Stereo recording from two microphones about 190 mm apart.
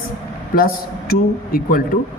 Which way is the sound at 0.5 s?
50° left (ahead or behind).